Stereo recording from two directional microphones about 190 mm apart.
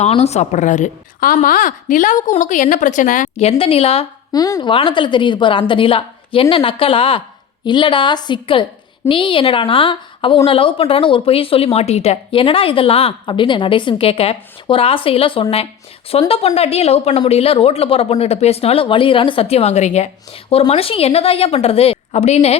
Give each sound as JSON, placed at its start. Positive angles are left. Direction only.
{"t": 0.0, "sound": "speech", "side_deg": 35}
{"t": 4.3, "sound": "a woman's voice", "side_deg": 20}